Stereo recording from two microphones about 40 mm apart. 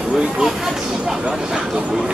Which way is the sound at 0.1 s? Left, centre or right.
Centre.